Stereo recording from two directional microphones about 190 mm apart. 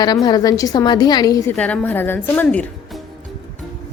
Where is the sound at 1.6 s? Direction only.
5° left (ahead or behind).